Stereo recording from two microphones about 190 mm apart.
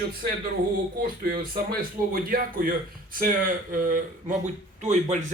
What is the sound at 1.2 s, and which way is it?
A man's voice, 50° right (ahead or behind).